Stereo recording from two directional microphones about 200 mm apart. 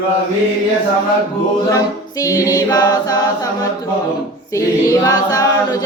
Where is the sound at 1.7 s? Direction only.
15° left (ahead or behind).